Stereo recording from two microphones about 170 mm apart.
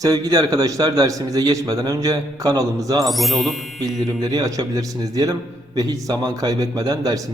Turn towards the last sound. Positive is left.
turn(degrees=-20)  # may be behind; listen again after turning